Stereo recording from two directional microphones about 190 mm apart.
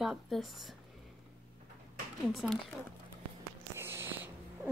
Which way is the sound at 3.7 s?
10° right (ahead or behind).